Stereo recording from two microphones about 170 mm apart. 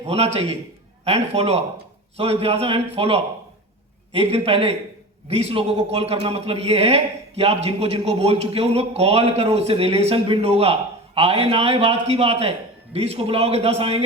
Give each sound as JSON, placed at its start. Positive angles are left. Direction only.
{"t": 0.0, "sound": "a man's voice", "side_deg": -40}